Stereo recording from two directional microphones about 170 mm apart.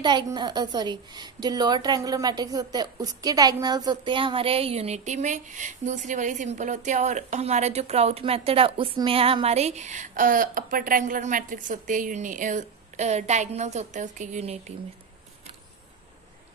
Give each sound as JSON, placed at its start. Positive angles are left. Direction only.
{"t": 0.0, "sound": "a woman's voice", "side_deg": -25}